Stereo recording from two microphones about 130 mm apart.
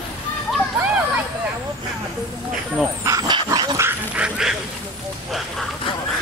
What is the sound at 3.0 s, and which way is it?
Dog, 30° right (ahead or behind).